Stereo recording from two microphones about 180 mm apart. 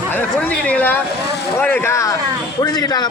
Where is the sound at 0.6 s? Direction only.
10° left (ahead or behind).